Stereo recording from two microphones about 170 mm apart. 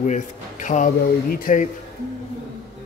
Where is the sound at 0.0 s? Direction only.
45° left (ahead or behind).